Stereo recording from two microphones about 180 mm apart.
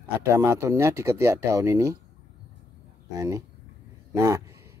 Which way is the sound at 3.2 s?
20° right (ahead or behind).